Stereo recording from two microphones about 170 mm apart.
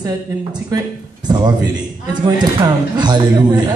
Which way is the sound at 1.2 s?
25° right (ahead or behind).